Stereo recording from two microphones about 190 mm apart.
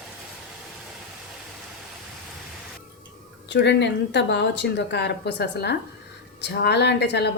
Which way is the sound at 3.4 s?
65° left (ahead or behind).